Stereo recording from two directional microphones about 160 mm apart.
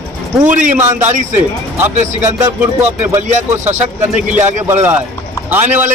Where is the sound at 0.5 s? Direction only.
50° right (ahead or behind).